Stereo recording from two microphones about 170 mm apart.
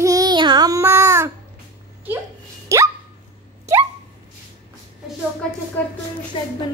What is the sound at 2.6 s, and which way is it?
Hiccup, 15° right (ahead or behind).